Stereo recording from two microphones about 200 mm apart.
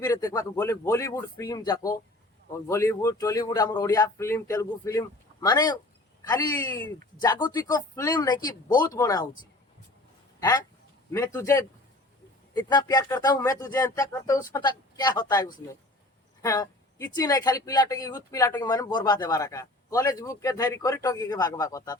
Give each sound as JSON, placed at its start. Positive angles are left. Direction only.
{"t": 0.0, "sound": "speech", "side_deg": 15}
{"t": 11.1, "sound": "speech", "side_deg": 15}
{"t": 12.7, "sound": "speech", "side_deg": 20}